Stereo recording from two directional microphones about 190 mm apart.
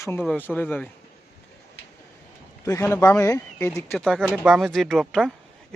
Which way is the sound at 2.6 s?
15° left (ahead or behind).